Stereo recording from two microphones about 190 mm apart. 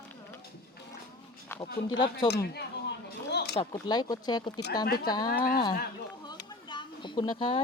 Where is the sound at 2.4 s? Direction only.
60° left (ahead or behind).